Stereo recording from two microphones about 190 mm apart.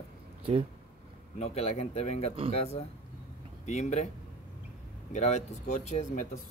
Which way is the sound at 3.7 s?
35° left (ahead or behind).